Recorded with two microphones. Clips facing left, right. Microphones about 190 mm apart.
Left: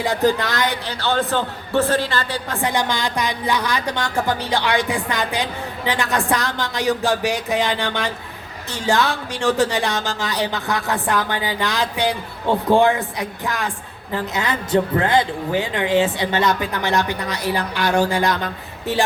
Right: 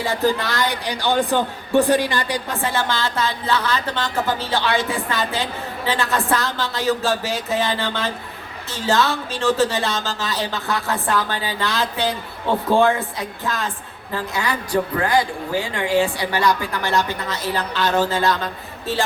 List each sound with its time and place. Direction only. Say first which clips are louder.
0.0 s speech: left 2 dB; 15° left (ahead or behind)
0.9 s a man's voice: right 2 dB; 15° right (ahead or behind)
2.6 s a woman's voice: left 4 dB; 15° left (ahead or behind)